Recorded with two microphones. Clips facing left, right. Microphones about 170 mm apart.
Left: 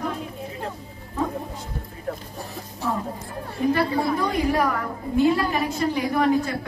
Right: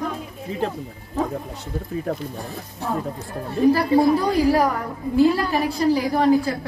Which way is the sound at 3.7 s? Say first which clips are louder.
Right 4 dB; 30° right (ahead or behind).